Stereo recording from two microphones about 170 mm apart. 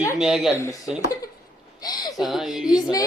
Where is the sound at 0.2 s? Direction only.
Centre (ahead or behind).